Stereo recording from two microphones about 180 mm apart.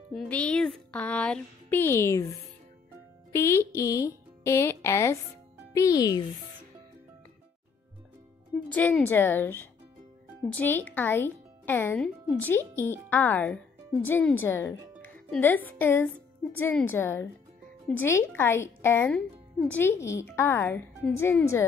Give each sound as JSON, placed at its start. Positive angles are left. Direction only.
{"t": 0.1, "sound": "speech", "side_deg": 5}
{"t": 3.3, "sound": "a child's voice", "side_deg": 15}
{"t": 8.6, "sound": "speech", "side_deg": 10}